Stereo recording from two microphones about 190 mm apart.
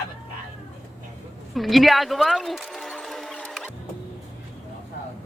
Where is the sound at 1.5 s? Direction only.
Centre (ahead or behind).